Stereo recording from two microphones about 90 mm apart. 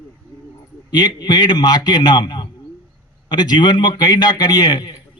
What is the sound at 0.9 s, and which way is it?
A man's voice, 55° left (ahead or behind).